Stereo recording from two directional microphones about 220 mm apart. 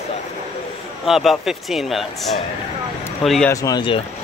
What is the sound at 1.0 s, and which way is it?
Speech, centre (ahead or behind).